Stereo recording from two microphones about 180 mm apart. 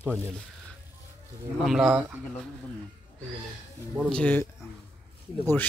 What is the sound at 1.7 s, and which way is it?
Speech, centre (ahead or behind).